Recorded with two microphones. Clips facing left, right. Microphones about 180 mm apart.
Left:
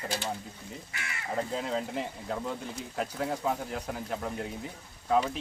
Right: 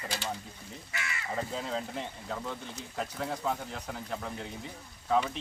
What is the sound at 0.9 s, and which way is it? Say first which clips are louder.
Speech: right 5 dB; 55° left (ahead or behind).